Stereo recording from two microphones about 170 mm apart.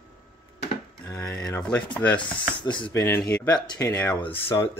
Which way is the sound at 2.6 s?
25° left (ahead or behind).